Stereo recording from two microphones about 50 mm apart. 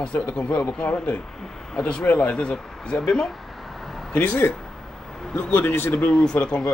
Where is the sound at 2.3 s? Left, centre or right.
Centre.